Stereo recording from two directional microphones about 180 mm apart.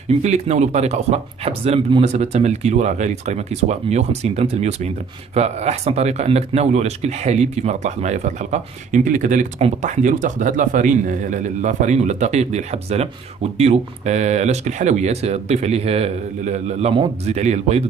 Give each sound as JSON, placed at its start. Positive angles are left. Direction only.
{"t": 0.2, "sound": "a man's voice", "side_deg": -40}